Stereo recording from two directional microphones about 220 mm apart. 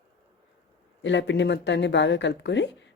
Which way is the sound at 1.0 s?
55° left (ahead or behind).